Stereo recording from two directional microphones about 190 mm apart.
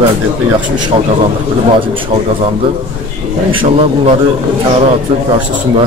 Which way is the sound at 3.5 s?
25° right (ahead or behind).